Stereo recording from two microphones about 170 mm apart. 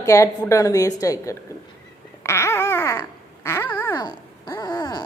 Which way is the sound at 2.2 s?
15° left (ahead or behind).